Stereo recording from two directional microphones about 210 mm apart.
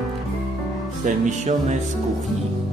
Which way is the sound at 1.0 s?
35° right (ahead or behind).